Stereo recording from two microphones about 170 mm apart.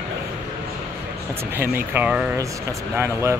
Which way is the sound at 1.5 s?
10° right (ahead or behind).